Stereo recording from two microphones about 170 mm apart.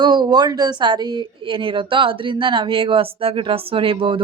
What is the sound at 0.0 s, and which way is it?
Speech, 25° right (ahead or behind).